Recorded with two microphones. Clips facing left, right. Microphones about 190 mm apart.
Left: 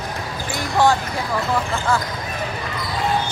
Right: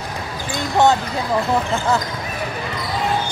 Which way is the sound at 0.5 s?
20° right (ahead or behind).